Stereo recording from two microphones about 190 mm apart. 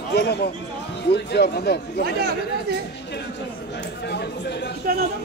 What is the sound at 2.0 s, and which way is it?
Speech, 55° right (ahead or behind).